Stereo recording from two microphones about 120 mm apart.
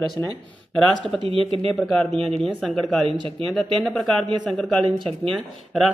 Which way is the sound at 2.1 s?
55° right (ahead or behind).